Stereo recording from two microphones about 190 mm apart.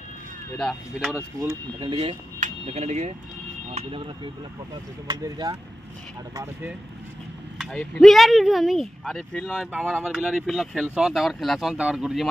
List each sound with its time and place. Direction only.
0.6 s speech: 5° left (ahead or behind)
1.1 s speech: 15° right (ahead or behind)
1.8 s speech: 25° right (ahead or behind)
2.4 s speech: 35° right (ahead or behind); by 6.7 s 10° right (ahead or behind)
7.5 s speech: 5° left (ahead or behind)